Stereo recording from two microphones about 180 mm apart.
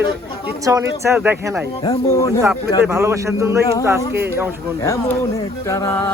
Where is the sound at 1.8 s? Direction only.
20° left (ahead or behind).